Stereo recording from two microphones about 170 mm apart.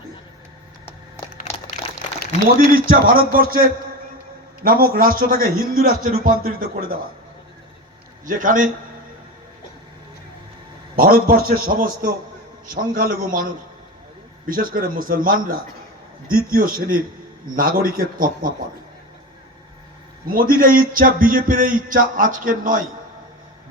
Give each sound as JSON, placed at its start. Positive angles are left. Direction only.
{"t": 2.6, "sound": "a man's voice", "side_deg": -60}
{"t": 8.2, "sound": "a man's voice", "side_deg": -50}
{"t": 10.9, "sound": "a man's voice", "side_deg": -60}
{"t": 20.2, "sound": "a man's voice", "side_deg": -55}